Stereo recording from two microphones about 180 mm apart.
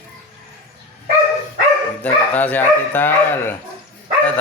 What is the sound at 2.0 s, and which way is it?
Speech, 10° left (ahead or behind).